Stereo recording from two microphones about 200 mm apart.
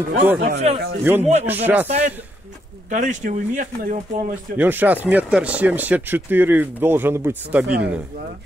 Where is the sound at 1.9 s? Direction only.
35° right (ahead or behind).